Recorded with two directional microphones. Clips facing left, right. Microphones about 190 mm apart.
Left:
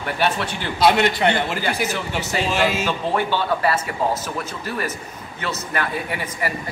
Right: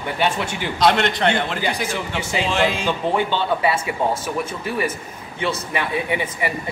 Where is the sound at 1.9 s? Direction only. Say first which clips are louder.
Even; 10° right (ahead or behind).